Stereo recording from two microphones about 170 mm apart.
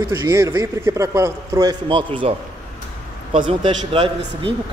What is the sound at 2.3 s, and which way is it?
Speech, 35° right (ahead or behind).